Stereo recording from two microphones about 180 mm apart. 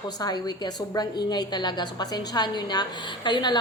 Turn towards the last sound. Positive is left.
turn(degrees=25)  # may be behind; listen again after turning